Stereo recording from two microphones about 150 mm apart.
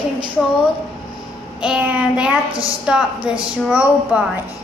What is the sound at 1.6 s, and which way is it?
Child singing, 10° right (ahead or behind).